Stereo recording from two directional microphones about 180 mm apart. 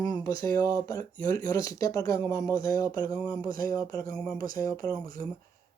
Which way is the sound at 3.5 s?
50° right (ahead or behind).